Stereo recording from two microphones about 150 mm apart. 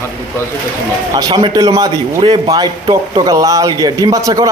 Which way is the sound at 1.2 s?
25° right (ahead or behind).